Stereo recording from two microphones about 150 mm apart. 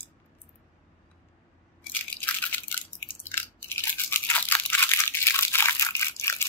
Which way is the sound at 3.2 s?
15° left (ahead or behind).